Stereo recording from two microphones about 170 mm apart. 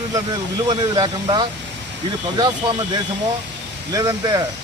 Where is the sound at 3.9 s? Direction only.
20° right (ahead or behind).